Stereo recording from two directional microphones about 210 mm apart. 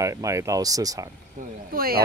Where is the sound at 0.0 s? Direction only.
15° right (ahead or behind).